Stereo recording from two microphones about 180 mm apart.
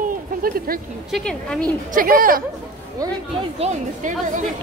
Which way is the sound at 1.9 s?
50° right (ahead or behind).